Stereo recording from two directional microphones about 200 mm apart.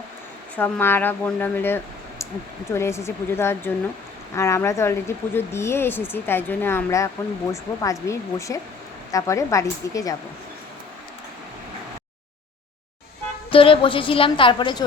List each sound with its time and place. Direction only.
0.5 s speech: 10° left (ahead or behind)
13.5 s a woman's voice: 25° left (ahead or behind)